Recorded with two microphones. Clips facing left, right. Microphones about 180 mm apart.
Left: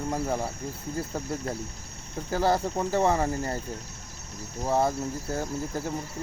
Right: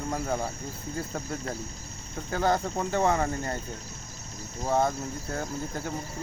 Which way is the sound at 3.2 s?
30° left (ahead or behind).